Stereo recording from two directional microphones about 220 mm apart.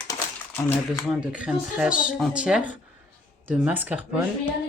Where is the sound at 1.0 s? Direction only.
5° right (ahead or behind).